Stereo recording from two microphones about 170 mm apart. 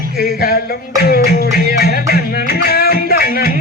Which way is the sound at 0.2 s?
60° left (ahead or behind).